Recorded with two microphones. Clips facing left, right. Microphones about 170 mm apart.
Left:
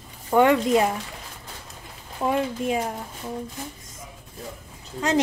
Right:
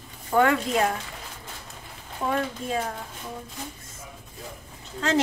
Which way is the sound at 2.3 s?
15° left (ahead or behind).